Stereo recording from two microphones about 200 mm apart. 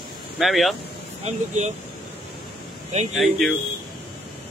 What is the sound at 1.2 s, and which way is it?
Speech, 35° right (ahead or behind).